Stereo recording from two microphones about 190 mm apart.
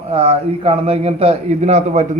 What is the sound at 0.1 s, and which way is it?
A man's voice, 30° right (ahead or behind).